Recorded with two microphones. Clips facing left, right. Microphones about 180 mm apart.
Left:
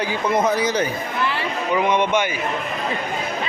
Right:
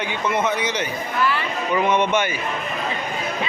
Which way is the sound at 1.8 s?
10° left (ahead or behind).